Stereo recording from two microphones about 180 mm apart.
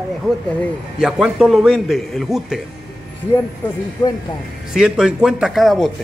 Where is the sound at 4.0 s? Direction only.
20° left (ahead or behind).